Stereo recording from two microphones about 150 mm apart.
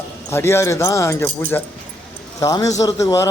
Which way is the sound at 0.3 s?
15° left (ahead or behind).